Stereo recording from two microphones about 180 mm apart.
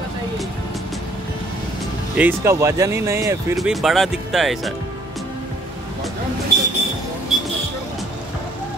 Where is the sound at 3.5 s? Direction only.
Centre (ahead or behind).